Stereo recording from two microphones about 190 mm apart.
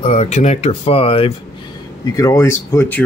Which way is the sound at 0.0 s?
35° left (ahead or behind).